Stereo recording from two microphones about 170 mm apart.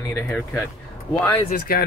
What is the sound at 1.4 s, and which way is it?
Speech, 60° left (ahead or behind).